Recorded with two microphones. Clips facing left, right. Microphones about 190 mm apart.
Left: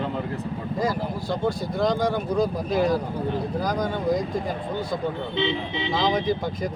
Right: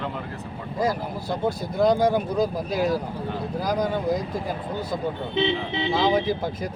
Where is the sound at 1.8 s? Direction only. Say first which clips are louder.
Right 4 dB; 5° right (ahead or behind).